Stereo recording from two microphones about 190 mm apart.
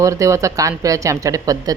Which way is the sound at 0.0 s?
15° right (ahead or behind).